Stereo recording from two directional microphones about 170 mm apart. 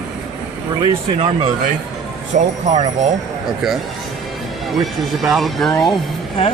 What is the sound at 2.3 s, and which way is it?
Speech, 45° right (ahead or behind).